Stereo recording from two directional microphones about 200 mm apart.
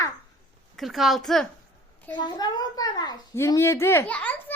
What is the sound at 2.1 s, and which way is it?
A child's voice, 20° left (ahead or behind).